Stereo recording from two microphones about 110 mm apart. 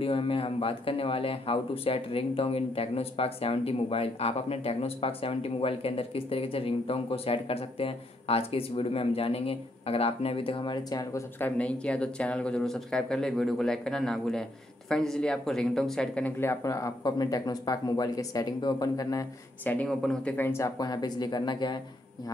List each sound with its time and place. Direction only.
0.0 s speech: 55° left (ahead or behind); by 11.2 s 35° left (ahead or behind)
11.3 s speech: 15° left (ahead or behind)
16.3 s speech: 25° left (ahead or behind)
19.6 s speech: 15° left (ahead or behind)
19.9 s speech: 5° left (ahead or behind)
20.3 s speech: 20° left (ahead or behind)
20.7 s speech: 35° left (ahead or behind)